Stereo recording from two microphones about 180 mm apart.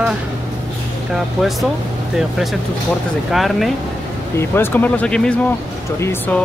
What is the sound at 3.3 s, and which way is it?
Speech, centre (ahead or behind).